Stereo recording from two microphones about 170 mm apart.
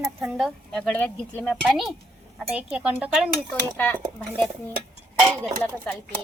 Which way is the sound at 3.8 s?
10° left (ahead or behind).